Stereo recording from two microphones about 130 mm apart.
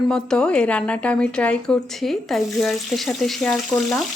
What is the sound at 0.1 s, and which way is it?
Speech, 10° left (ahead or behind).